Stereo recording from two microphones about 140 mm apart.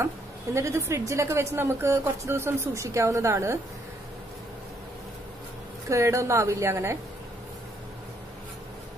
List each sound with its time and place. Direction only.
0.6 s a woman's voice: 20° right (ahead or behind)
5.9 s a woman's voice: 20° right (ahead or behind)